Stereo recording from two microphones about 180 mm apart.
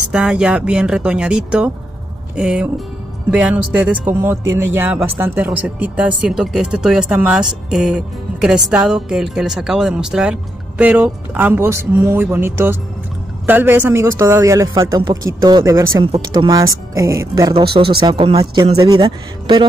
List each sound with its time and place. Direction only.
0.1 s speech: 5° right (ahead or behind)
16.0 s speech: 30° right (ahead or behind)